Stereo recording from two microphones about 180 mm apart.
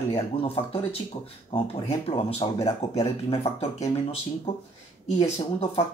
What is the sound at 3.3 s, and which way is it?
Speech, 35° left (ahead or behind).